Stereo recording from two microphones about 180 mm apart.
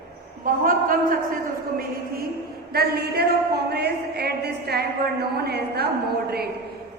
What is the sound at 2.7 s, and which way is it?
A woman's voice, 60° right (ahead or behind).